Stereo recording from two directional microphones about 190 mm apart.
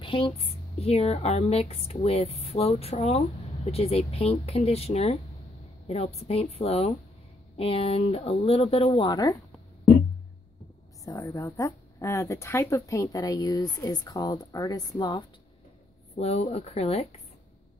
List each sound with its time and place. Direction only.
0.0 s speech: 25° left (ahead or behind)
11.1 s speech: 20° left (ahead or behind)
16.2 s speech: 35° left (ahead or behind)